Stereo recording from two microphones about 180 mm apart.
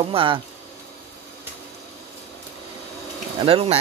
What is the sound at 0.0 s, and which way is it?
Speech, 30° right (ahead or behind).